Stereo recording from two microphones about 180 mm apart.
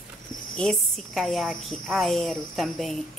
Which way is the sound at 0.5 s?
Centre (ahead or behind).